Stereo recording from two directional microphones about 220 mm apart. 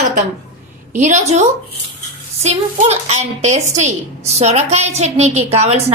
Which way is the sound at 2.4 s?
30° right (ahead or behind).